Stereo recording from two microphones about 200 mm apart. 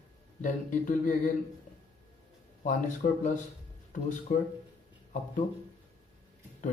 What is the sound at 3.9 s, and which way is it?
Speech, 40° left (ahead or behind).